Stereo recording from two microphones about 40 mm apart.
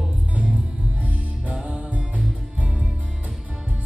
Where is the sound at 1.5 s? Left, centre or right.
Right.